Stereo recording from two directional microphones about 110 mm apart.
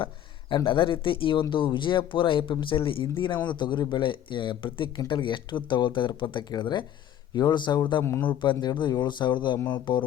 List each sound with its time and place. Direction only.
0.0 s speech: 50° left (ahead or behind)
8.0 s speech: 25° left (ahead or behind)
8.3 s speech: 45° left (ahead or behind)